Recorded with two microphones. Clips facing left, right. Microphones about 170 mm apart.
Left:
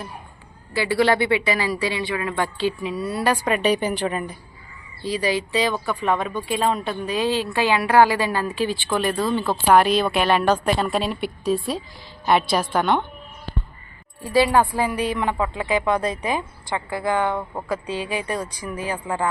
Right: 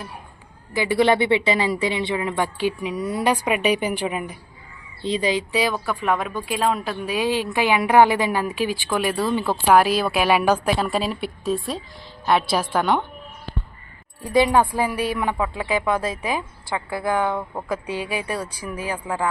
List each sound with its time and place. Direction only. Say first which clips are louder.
0.7 s speech: right 1 dB; 20° right (ahead or behind)
5.0 s a woman's voice: right 1 dB; 20° right (ahead or behind)
14.3 s a woman's voice: even; 20° right (ahead or behind)